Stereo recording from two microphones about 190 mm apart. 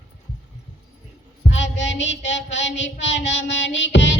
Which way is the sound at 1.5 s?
75° left (ahead or behind).